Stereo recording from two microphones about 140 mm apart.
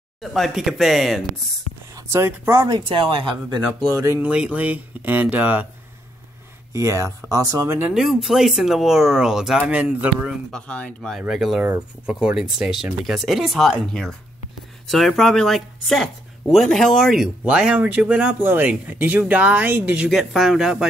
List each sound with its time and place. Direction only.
0.2 s speech: centre (ahead or behind)
2.0 s speech: 20° right (ahead or behind)
2.7 s speech: 40° right (ahead or behind)
3.9 s speech: 20° right (ahead or behind)
4.3 s speech: 10° right (ahead or behind)
6.7 s speech: 20° right (ahead or behind)
7.9 s speech: 5° right (ahead or behind)
10.5 s speech: 10° left (ahead or behind)